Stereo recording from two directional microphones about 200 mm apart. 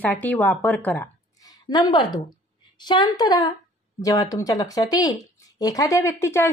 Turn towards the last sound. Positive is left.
turn(degrees=15)  # may be behind; listen again after turning